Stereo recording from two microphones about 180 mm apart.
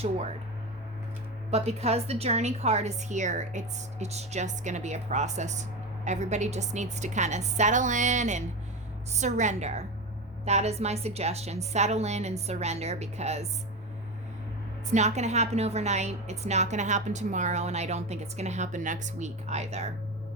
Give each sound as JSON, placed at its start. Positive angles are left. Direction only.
{"t": 1.5, "sound": "a woman's voice", "side_deg": -35}
{"t": 14.9, "sound": "a woman's voice", "side_deg": -40}